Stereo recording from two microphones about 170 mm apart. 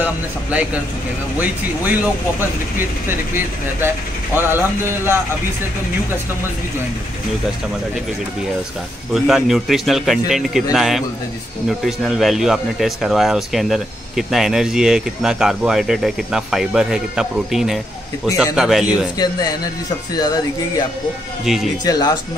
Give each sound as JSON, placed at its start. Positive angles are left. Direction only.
{"t": 0.0, "sound": "speech", "side_deg": -10}
{"t": 3.1, "sound": "speech", "side_deg": -15}
{"t": 9.1, "sound": "speech", "side_deg": 0}
{"t": 19.1, "sound": "speech", "side_deg": 25}
{"t": 21.5, "sound": "speech", "side_deg": 0}
{"t": 21.8, "sound": "speech", "side_deg": 25}